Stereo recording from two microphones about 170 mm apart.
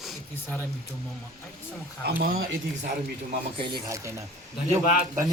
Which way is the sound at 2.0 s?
60° right (ahead or behind).